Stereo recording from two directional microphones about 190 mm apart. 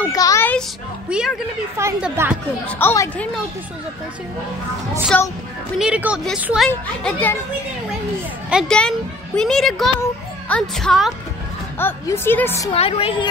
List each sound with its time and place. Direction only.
0.1 s a sound: 15° left (ahead or behind)
1.1 s speech: 5° right (ahead or behind)
2.6 s a woman's voice: 10° left (ahead or behind)
5.1 s a woman's voice: 5° left (ahead or behind)
5.8 s a woman's voice: 5° right (ahead or behind)
8.5 s speech: centre (ahead or behind)
11.8 s a woman's voice: 10° left (ahead or behind)
12.7 s a woman's voice: 30° left (ahead or behind)